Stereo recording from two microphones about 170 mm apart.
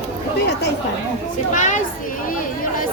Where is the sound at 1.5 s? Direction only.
50° left (ahead or behind).